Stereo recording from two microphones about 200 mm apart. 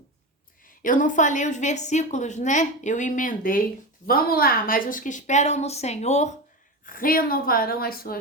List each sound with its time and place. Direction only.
0.8 s a woman's voice: 40° left (ahead or behind)
6.8 s a woman's voice: 45° left (ahead or behind)